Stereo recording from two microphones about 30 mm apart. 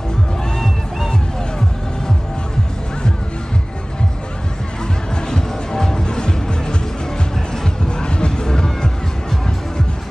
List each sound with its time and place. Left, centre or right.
5.3 s music: left